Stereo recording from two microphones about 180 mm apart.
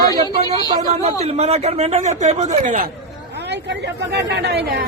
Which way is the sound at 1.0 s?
35° right (ahead or behind).